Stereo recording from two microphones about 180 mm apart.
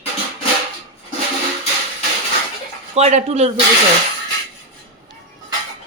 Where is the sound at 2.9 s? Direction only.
35° right (ahead or behind).